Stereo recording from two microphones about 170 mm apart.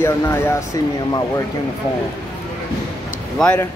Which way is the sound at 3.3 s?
5° left (ahead or behind).